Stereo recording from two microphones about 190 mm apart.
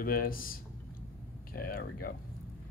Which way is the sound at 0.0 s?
50° left (ahead or behind).